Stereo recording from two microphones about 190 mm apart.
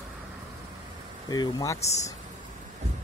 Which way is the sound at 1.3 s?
20° left (ahead or behind).